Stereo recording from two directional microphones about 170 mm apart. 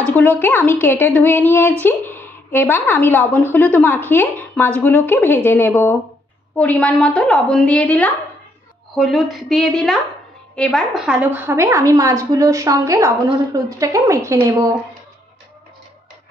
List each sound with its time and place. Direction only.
0.0 s a woman's voice: 10° left (ahead or behind); by 14.8 s 20° right (ahead or behind)